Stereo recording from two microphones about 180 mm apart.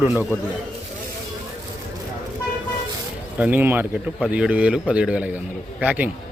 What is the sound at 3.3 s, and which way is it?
A man's voice, 10° right (ahead or behind).